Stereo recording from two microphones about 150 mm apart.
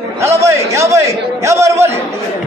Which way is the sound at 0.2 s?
20° right (ahead or behind).